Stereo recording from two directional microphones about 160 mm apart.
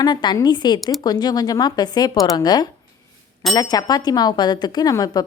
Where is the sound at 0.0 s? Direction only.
25° left (ahead or behind).